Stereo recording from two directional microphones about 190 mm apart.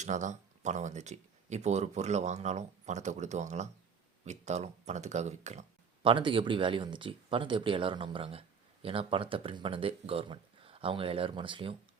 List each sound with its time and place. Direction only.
0.0 s speech: 40° right (ahead or behind)